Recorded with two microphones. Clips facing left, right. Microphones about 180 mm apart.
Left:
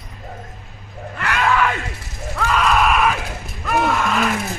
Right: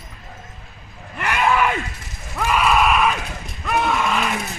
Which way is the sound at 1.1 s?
20° right (ahead or behind).